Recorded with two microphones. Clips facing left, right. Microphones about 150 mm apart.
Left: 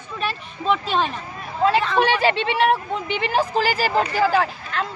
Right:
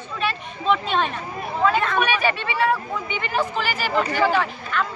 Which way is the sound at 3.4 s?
35° left (ahead or behind).